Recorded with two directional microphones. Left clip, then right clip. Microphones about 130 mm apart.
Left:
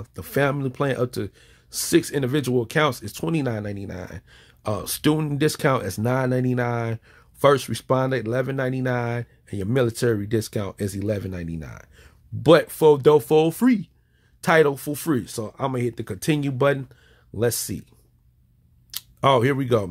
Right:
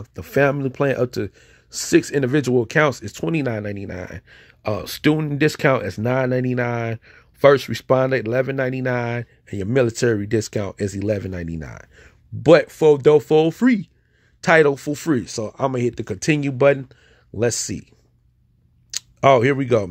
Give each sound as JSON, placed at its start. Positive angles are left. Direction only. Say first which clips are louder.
{"t": 0.0, "sound": "speech", "louder": "right 5 dB", "side_deg": -15}
{"t": 11.3, "sound": "speech", "louder": "right 4 dB", "side_deg": -35}
{"t": 12.4, "sound": "speech", "louder": "right 2 dB", "side_deg": -5}
{"t": 14.4, "sound": "speech", "louder": "right 3 dB", "side_deg": -15}
{"t": 18.9, "sound": "speech", "louder": "right 5 dB", "side_deg": -15}